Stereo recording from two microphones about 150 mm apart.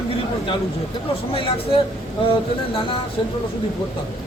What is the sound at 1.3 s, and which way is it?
Speech, 35° left (ahead or behind).